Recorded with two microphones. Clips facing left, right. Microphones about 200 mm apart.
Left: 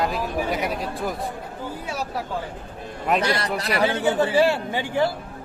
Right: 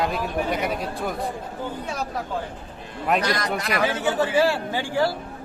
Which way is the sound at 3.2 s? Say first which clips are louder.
Left 1 dB; 30° left (ahead or behind).